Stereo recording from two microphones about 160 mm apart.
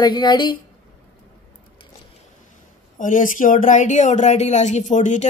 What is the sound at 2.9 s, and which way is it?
Speech, 55° left (ahead or behind).